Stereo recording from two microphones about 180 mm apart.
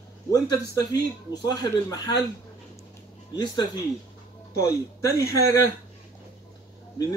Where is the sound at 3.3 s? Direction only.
25° left (ahead or behind).